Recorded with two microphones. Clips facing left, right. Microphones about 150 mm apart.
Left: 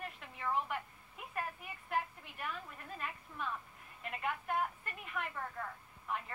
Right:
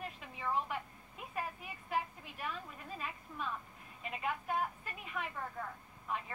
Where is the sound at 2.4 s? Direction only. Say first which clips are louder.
Right 1 dB; 5° right (ahead or behind).